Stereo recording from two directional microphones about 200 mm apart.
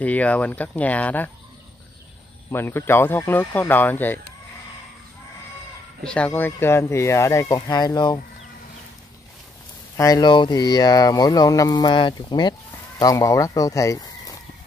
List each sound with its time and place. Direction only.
0.0 s speech: 5° left (ahead or behind)
2.5 s speech: 10° left (ahead or behind)
6.0 s speech: 5° left (ahead or behind)
9.9 s speech: 15° left (ahead or behind)